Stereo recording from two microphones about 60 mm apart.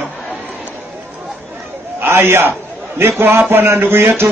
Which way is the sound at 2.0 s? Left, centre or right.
Right.